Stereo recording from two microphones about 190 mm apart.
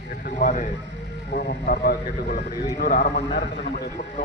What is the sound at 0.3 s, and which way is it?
Speech, 45° left (ahead or behind).